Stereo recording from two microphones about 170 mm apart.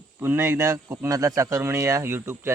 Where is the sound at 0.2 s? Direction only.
15° right (ahead or behind).